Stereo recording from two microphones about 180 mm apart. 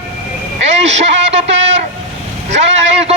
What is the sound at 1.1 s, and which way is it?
Speech, 85° right.